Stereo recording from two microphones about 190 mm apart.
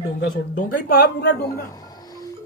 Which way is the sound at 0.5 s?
60° left (ahead or behind).